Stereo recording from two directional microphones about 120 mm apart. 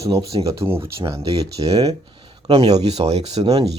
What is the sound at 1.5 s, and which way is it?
Speech, 55° right (ahead or behind).